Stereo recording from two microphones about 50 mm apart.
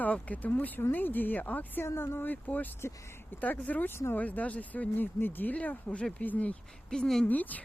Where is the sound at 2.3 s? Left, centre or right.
Left.